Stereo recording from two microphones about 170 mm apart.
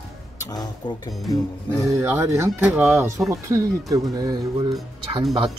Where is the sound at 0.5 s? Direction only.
25° left (ahead or behind).